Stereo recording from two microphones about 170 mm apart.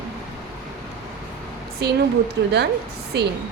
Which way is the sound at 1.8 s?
75° right (ahead or behind).